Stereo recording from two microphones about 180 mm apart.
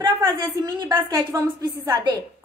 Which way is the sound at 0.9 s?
20° right (ahead or behind).